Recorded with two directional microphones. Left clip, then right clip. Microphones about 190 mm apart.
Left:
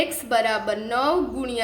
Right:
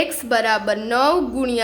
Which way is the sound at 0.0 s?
25° right (ahead or behind).